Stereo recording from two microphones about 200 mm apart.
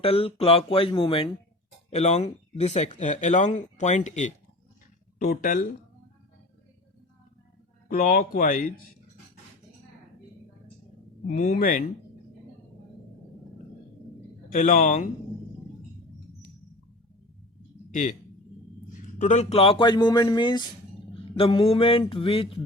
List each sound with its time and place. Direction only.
0.0 s speech: 30° left (ahead or behind)
7.9 s speech: 45° left (ahead or behind)
11.3 s speech: 40° left (ahead or behind)
14.5 s speech: 40° left (ahead or behind)
18.9 s speech: 40° left (ahead or behind)